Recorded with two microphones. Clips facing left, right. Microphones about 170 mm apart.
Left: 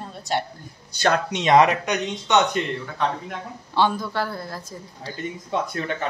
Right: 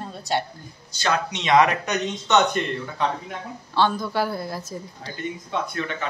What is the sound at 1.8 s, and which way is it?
Speech, 15° left (ahead or behind).